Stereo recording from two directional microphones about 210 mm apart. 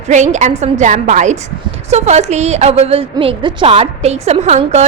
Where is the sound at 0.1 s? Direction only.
35° right (ahead or behind).